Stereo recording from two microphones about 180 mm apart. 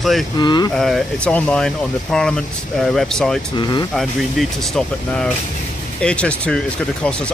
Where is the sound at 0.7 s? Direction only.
Centre (ahead or behind).